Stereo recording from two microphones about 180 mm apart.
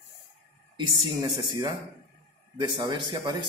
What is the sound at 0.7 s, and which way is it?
Speech, 25° right (ahead or behind).